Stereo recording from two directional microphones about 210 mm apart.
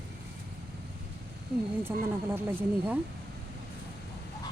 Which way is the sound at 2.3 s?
10° right (ahead or behind).